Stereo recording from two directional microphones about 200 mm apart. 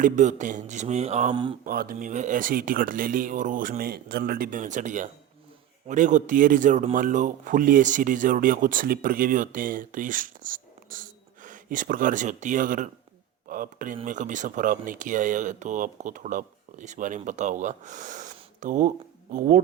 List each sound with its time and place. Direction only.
0.0 s speech: 35° right (ahead or behind)
1.6 s speech: 45° right (ahead or behind)